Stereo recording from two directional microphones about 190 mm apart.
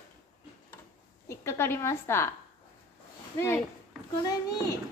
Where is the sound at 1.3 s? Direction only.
15° left (ahead or behind).